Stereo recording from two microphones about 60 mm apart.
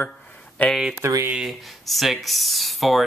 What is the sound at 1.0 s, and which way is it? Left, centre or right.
Speech, right.